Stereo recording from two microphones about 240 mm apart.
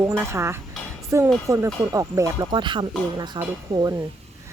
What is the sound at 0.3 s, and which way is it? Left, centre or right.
A woman's voice, centre.